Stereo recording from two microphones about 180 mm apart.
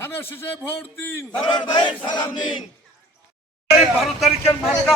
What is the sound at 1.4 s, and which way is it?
Battle cry, 25° left (ahead or behind).